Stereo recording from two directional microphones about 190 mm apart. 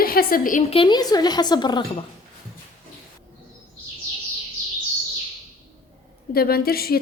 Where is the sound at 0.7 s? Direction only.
25° left (ahead or behind).